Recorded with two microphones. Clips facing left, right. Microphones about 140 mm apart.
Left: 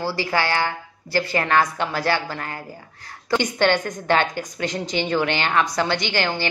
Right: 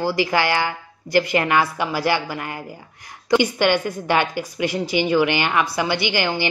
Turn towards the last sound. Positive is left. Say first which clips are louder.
# right 2 dB
turn(degrees=-15)  # may be behind; listen again after turning